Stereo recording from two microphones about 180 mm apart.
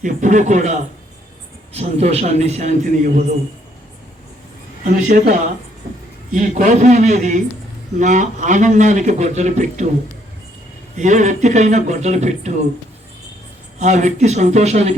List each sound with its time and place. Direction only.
0.0 s a man's voice: 45° right (ahead or behind)
4.9 s a man's voice: 45° right (ahead or behind)
10.9 s a man's voice: 40° right (ahead or behind)
13.7 s a man's voice: 40° right (ahead or behind)